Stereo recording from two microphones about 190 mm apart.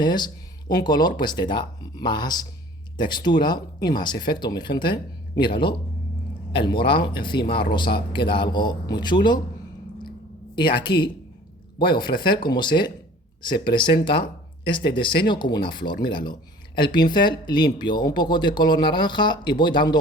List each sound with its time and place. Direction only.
0.0 s speech: 25° left (ahead or behind)
10.5 s speech: 25° left (ahead or behind)